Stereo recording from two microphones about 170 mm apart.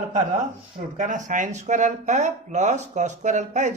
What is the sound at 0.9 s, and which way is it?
A woman's voice, 50° right (ahead or behind).